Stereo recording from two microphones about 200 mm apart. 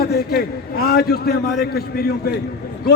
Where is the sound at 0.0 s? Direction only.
50° left (ahead or behind).